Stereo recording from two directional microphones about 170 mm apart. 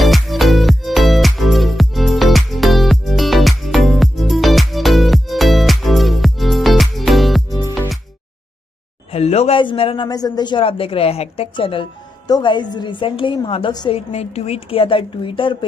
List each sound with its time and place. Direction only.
0.0 s music: centre (ahead or behind)
9.1 s a man's voice: 40° left (ahead or behind)